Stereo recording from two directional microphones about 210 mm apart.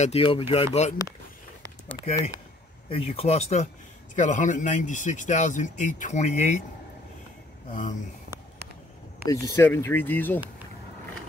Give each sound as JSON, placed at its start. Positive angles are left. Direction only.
{"t": 0.0, "sound": "speech", "side_deg": 25}
{"t": 2.0, "sound": "speech", "side_deg": 30}
{"t": 7.7, "sound": "speech", "side_deg": 35}
{"t": 9.3, "sound": "speech", "side_deg": 15}